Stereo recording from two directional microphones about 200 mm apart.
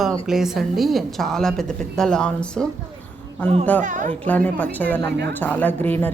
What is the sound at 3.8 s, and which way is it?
Speech, 40° right (ahead or behind).